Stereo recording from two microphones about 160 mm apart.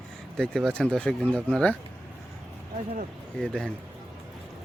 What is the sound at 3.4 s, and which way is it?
Speech, 5° left (ahead or behind).